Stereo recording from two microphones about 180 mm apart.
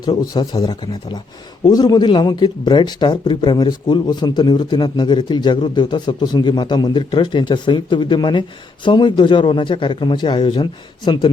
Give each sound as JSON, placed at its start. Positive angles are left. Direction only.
{"t": 0.0, "sound": "speech", "side_deg": 20}